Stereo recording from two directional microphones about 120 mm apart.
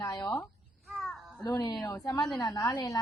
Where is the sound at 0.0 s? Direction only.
30° left (ahead or behind).